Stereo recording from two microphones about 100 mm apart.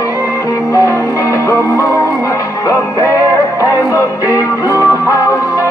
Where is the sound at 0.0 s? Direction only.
30° left (ahead or behind).